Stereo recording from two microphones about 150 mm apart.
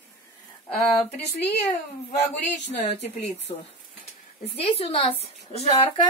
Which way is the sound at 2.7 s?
50° left (ahead or behind).